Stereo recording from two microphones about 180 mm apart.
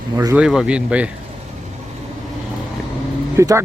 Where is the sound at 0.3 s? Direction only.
5° right (ahead or behind).